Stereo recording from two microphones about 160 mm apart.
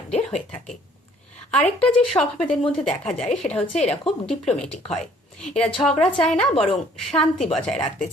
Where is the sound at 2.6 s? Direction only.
40° left (ahead or behind).